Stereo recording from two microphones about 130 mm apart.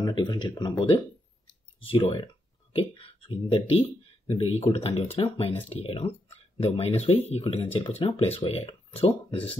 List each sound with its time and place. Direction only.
0.0 s speech: 35° left (ahead or behind)
1.5 s clicking: 45° left (ahead or behind)
2.7 s speech: 45° left (ahead or behind)